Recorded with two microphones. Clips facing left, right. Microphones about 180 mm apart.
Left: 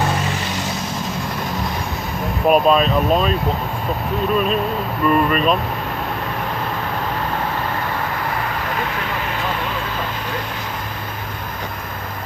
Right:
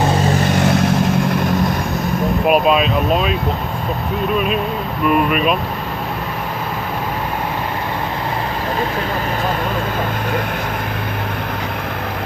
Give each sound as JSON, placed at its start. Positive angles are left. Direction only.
{"t": 0.5, "sound": "vehicle", "side_deg": -60}
{"t": 2.4, "sound": "speech", "side_deg": -5}
{"t": 5.0, "sound": "speech", "side_deg": -10}